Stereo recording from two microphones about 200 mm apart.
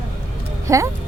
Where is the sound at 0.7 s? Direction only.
15° right (ahead or behind).